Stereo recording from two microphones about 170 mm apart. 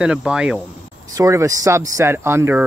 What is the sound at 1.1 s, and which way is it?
Speech, 20° right (ahead or behind).